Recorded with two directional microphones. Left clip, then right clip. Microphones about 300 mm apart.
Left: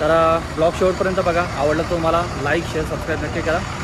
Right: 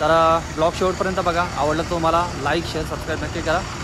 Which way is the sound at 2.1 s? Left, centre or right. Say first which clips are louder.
Right 1 dB; centre.